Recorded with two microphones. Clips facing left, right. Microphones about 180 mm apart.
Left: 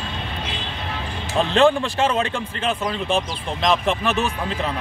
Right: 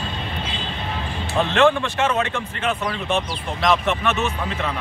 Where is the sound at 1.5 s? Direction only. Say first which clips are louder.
Left 1 dB; 35° left (ahead or behind).